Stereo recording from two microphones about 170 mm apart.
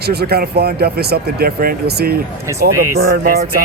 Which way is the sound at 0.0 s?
70° right (ahead or behind).